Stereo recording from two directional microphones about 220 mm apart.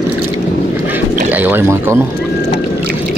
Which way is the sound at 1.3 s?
10° right (ahead or behind).